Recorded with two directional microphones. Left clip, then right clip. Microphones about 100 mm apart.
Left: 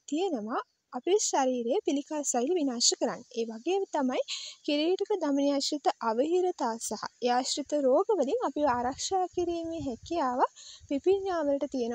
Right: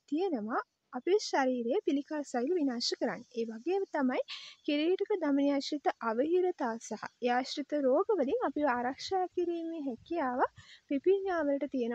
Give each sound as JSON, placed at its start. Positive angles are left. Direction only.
{"t": 0.1, "sound": "speech", "side_deg": 20}